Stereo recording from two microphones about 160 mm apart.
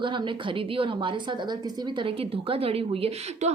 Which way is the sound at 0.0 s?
30° right (ahead or behind).